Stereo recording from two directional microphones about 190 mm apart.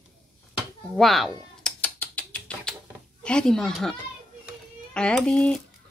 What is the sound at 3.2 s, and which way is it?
Speech, 5° left (ahead or behind).